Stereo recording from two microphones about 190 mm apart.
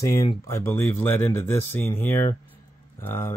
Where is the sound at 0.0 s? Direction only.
15° left (ahead or behind).